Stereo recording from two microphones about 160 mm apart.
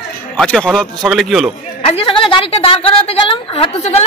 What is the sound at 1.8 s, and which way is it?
A woman's voice, 35° left (ahead or behind).